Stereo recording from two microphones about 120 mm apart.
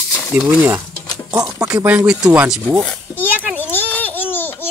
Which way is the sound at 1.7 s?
10° right (ahead or behind).